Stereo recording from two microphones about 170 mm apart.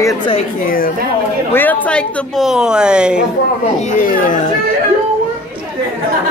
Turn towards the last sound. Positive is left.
turn(degrees=50)  # may be behind; listen again after turning